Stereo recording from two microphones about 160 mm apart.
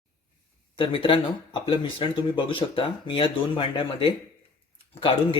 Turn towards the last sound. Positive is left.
turn(degrees=35)  # may be behind; listen again after turning